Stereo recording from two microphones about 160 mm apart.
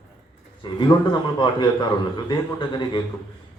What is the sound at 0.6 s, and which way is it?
Speech, 25° left (ahead or behind).